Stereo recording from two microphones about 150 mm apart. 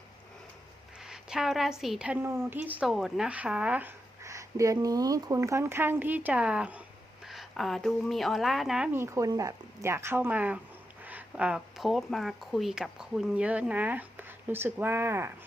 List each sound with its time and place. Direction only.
1.0 s a woman's voice: 5° right (ahead or behind)
9.0 s speech: 20° right (ahead or behind)